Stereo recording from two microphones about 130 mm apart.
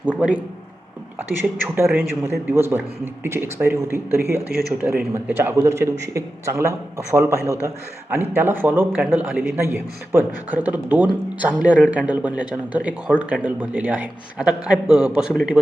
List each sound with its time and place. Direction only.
0.0 s a man's voice: 10° right (ahead or behind)
1.6 s a man's voice: 15° right (ahead or behind)